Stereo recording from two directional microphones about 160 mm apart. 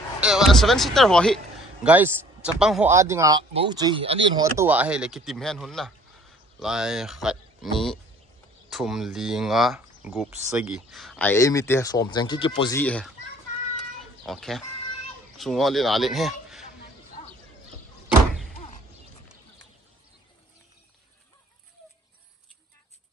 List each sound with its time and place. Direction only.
0.2 s speech: 5° right (ahead or behind)
1.8 s a man's voice: 10° right (ahead or behind)
2.9 s speech: 20° right (ahead or behind); by 4.2 s 35° right (ahead or behind)
4.4 s speech: 15° right (ahead or behind); by 12.7 s 30° left (ahead or behind)
12.7 s a child's voice: 10° left (ahead or behind)
14.2 s a man's voice: centre (ahead or behind)
18.0 s door: centre (ahead or behind)